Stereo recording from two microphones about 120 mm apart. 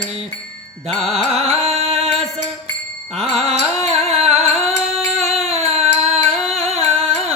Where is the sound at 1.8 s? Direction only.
55° right (ahead or behind).